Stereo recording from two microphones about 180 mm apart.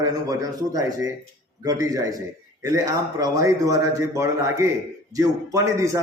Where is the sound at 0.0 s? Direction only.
20° right (ahead or behind).